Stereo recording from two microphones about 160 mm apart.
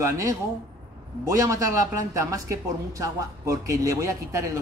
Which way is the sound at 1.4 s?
20° right (ahead or behind).